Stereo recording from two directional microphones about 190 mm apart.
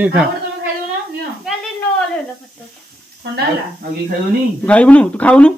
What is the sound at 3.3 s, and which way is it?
Speech, 55° right (ahead or behind).